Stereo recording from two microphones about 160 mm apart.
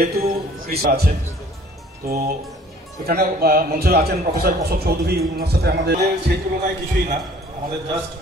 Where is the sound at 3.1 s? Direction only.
75° right (ahead or behind).